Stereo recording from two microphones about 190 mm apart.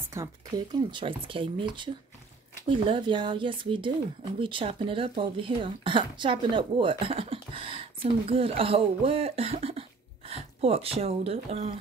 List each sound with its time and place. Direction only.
0.2 s speech: 15° right (ahead or behind)
0.7 s speech: 25° right (ahead or behind)
2.7 s speech: 25° right (ahead or behind)